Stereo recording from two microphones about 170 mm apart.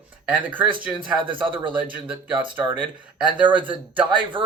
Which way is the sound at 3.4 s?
10° right (ahead or behind).